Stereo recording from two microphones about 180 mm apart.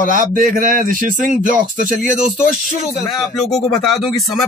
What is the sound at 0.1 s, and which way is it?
Speech, 50° right (ahead or behind).